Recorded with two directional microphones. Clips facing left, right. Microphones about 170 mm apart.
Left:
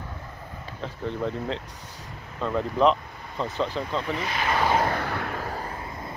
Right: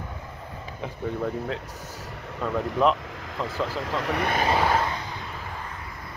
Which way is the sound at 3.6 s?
90° right.